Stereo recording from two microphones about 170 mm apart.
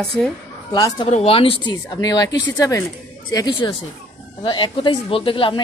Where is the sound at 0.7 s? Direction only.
25° left (ahead or behind).